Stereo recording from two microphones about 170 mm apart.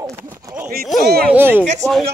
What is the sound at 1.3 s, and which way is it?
Speech, 10° right (ahead or behind).